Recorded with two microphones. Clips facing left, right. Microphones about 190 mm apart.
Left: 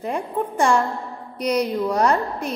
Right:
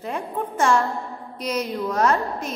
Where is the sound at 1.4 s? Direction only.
65° left (ahead or behind).